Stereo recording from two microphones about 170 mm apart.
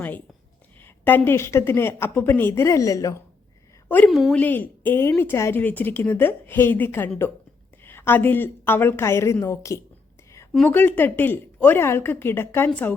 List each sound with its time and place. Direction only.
1.0 s a woman's voice: 10° left (ahead or behind)
4.1 s a woman's voice: centre (ahead or behind)